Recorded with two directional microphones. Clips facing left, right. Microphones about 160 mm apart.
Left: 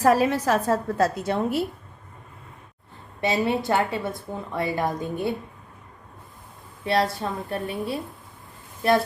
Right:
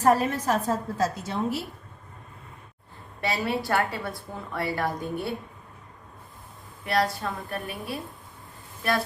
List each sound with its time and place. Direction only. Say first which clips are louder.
0.0 s a woman's voice: left 3 dB; 90° left; by 1.6 s 55° left (ahead or behind)
3.2 s a woman's voice: left 4 dB; 20° left (ahead or behind)
6.8 s a woman's voice: left 2 dB; 25° left (ahead or behind)